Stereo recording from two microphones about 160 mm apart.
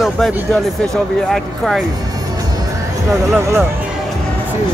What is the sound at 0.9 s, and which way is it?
Speech, centre (ahead or behind).